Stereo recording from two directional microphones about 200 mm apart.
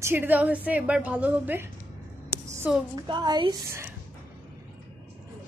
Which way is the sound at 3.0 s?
20° right (ahead or behind).